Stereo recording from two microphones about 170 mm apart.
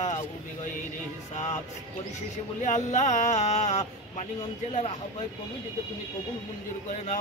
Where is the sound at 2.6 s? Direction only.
45° left (ahead or behind).